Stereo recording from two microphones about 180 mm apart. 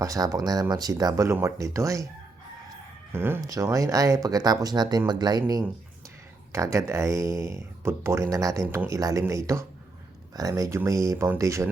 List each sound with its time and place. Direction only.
0.0 s speech: 20° right (ahead or behind)
3.1 s speech: 10° right (ahead or behind)